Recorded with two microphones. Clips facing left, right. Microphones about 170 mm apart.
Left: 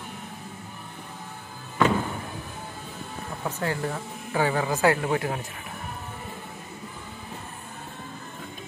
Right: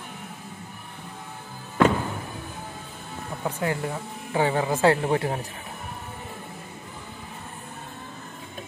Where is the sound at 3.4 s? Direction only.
15° right (ahead or behind).